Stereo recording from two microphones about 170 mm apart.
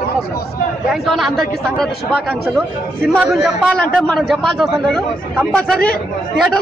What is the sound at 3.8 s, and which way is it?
A man's voice, 5° left (ahead or behind).